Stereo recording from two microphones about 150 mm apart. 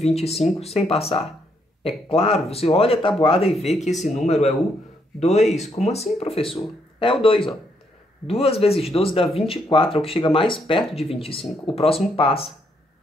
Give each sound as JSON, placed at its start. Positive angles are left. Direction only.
{"t": 0.0, "sound": "speech", "side_deg": 45}
{"t": 3.8, "sound": "speech", "side_deg": 50}